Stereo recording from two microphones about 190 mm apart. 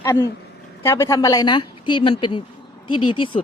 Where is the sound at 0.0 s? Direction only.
15° left (ahead or behind).